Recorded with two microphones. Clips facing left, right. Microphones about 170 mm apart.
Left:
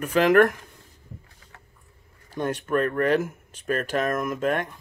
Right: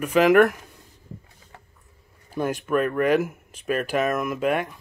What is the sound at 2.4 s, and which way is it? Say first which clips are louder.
Speech: right 1 dB; 10° right (ahead or behind).